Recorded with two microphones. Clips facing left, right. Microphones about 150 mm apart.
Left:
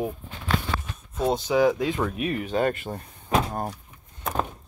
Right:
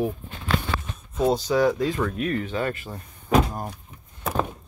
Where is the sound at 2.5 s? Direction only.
40° left (ahead or behind).